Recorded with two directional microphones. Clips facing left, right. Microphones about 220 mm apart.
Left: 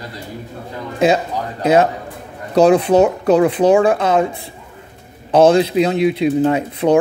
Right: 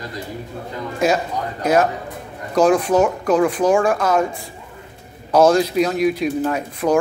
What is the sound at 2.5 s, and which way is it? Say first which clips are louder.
Speech: left 4 dB; 35° left (ahead or behind).